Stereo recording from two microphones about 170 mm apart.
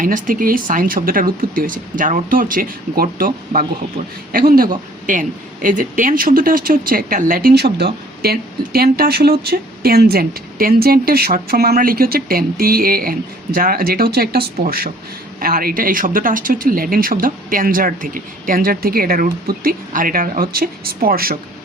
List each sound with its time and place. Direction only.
0.0 s speech: 55° right (ahead or behind)